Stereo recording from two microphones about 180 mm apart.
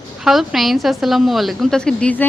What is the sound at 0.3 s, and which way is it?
A woman's voice, centre (ahead or behind).